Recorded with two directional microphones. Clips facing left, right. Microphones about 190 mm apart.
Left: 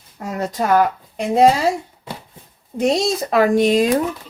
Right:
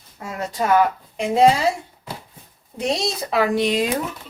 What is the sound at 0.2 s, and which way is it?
Speech, 40° left (ahead or behind).